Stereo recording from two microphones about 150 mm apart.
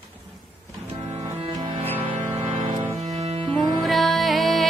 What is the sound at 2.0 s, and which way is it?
Music, 35° right (ahead or behind).